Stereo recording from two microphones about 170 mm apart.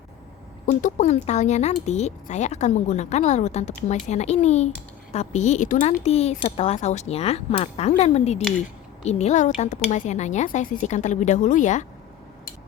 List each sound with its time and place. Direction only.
0.6 s speech: 50° left (ahead or behind)